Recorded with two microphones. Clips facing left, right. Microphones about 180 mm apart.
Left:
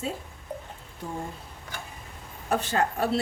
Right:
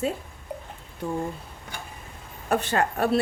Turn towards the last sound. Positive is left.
turn(degrees=-60)  # may be behind; listen again after turning